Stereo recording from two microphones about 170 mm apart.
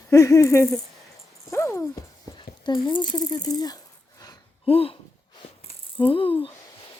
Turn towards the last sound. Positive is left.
turn(degrees=30)  # may be behind; listen again after turning